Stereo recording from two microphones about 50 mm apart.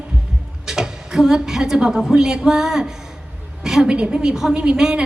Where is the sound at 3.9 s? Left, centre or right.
Right.